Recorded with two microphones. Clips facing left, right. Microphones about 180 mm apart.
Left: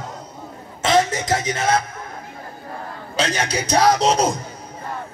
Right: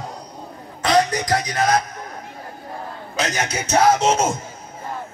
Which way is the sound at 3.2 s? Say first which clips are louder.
Left 2 dB; 30° left (ahead or behind).